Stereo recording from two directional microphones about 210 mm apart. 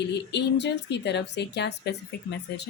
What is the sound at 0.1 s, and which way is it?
A woman's voice, 55° left (ahead or behind).